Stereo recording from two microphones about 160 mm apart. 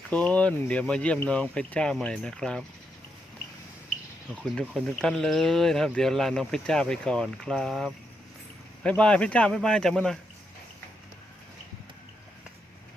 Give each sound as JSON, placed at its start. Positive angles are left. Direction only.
{"t": 0.1, "sound": "speech", "side_deg": 10}
{"t": 4.6, "sound": "speech", "side_deg": 0}